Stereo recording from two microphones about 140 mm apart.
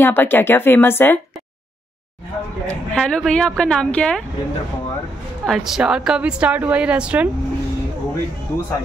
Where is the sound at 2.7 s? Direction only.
5° left (ahead or behind).